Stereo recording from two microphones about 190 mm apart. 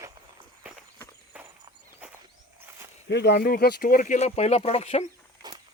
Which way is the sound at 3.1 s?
65° left (ahead or behind).